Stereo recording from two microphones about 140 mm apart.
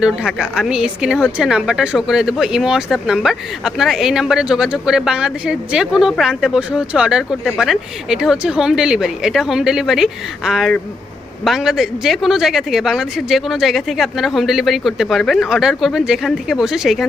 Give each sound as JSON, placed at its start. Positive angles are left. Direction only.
{"t": 0.0, "sound": "a woman's voice", "side_deg": -5}